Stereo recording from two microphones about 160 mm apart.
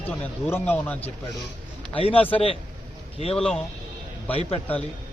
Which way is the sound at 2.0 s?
35° left (ahead or behind).